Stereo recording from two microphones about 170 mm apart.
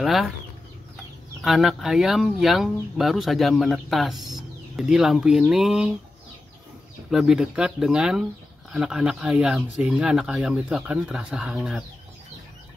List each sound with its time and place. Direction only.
0.0 s speech: centre (ahead or behind)
1.4 s speech: centre (ahead or behind)
7.1 s speech: 5° right (ahead or behind)